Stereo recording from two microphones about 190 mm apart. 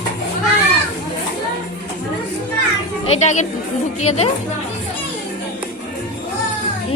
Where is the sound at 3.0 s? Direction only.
35° left (ahead or behind).